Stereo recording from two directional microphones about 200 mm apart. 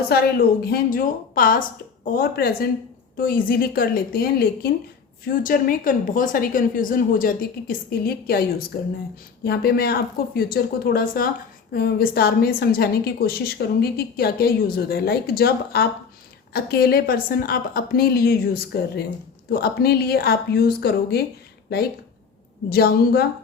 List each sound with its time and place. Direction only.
0.1 s a woman's voice: 50° left (ahead or behind)
22.7 s a woman's voice: 50° left (ahead or behind)